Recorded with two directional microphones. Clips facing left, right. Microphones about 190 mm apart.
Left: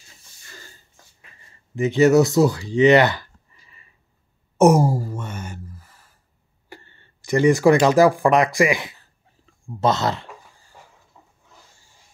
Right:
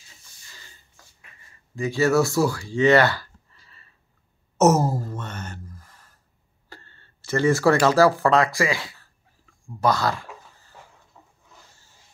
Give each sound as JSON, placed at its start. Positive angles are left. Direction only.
{"t": 1.8, "sound": "speech", "side_deg": 20}
{"t": 4.6, "sound": "sigh", "side_deg": 15}
{"t": 6.7, "sound": "speech", "side_deg": 15}